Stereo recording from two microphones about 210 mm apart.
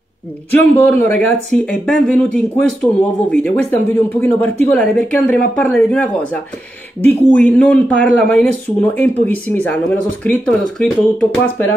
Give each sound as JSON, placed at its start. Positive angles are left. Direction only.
{"t": 0.5, "sound": "speech", "side_deg": 10}